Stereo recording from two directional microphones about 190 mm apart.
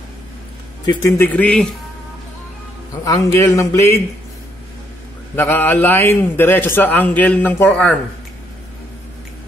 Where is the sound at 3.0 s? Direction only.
15° left (ahead or behind).